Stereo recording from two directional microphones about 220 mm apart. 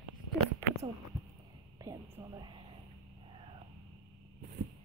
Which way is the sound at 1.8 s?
15° right (ahead or behind).